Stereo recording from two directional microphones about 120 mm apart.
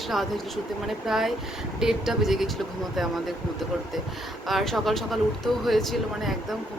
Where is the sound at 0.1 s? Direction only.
Centre (ahead or behind).